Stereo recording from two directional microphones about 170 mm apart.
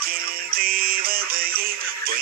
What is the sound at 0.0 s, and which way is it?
Music, 60° right (ahead or behind).